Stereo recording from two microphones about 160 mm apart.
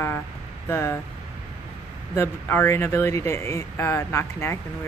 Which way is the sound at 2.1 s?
15° left (ahead or behind).